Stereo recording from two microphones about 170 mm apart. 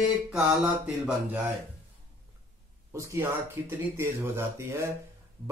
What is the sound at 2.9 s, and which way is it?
Speech, 15° right (ahead or behind).